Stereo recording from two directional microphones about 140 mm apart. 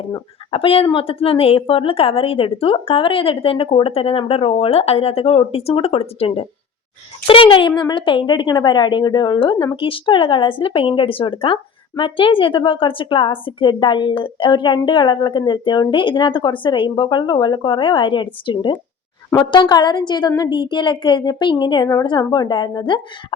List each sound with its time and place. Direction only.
0.5 s speech: 40° left (ahead or behind)